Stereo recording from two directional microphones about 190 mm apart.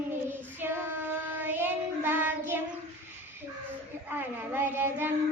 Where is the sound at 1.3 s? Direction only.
10° right (ahead or behind).